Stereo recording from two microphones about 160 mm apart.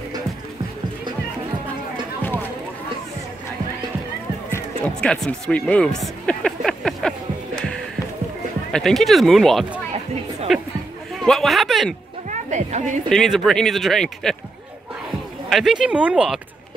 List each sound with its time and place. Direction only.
5.0 s a sound: 5° left (ahead or behind)
8.7 s speech: centre (ahead or behind)
12.3 s music: 50° right (ahead or behind)
13.1 s speech: centre (ahead or behind)
15.5 s speech: 5° right (ahead or behind)